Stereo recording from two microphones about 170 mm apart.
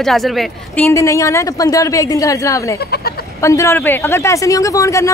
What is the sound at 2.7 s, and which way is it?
Speech, 65° left (ahead or behind).